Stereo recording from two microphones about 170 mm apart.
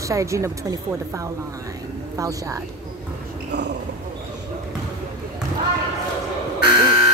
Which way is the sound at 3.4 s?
90° right.